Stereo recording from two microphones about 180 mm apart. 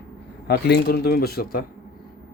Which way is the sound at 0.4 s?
65° left (ahead or behind).